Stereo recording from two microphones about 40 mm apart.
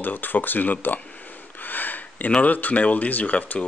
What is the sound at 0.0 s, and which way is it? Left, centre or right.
Speech, left.